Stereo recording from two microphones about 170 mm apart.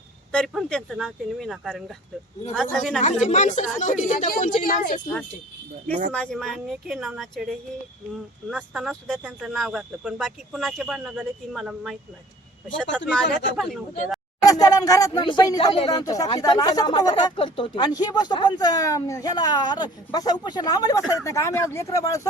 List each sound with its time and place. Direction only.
0.3 s speech: 5° left (ahead or behind)
3.0 s a woman's voice: 45° left (ahead or behind)
6.1 s speech: 5° left (ahead or behind)
14.4 s speech: 20° left (ahead or behind)